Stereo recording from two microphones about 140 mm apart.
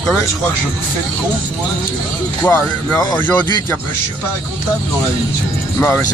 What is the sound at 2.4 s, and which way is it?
Speech, 20° left (ahead or behind).